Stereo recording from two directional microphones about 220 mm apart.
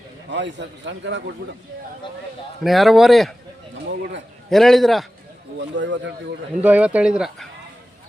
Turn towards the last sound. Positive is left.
turn(degrees=-5)  # may be behind; listen again after turning